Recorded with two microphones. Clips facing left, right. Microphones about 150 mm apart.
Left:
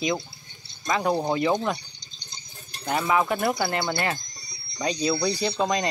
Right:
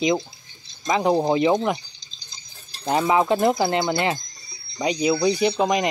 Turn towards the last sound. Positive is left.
turn(degrees=-20)  # may be behind; listen again after turning